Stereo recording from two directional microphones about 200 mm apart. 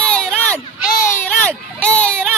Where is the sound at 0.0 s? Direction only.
5° left (ahead or behind).